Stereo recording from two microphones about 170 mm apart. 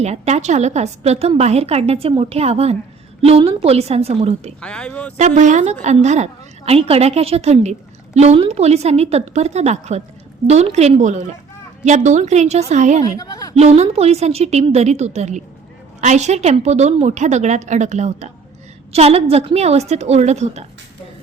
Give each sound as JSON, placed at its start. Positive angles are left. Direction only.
{"t": 0.0, "sound": "a woman's voice", "side_deg": -40}
{"t": 4.6, "sound": "speech", "side_deg": 5}
{"t": 5.1, "sound": "a woman's voice", "side_deg": -45}
{"t": 13.1, "sound": "a woman's voice", "side_deg": 20}
{"t": 13.6, "sound": "a woman's voice", "side_deg": -40}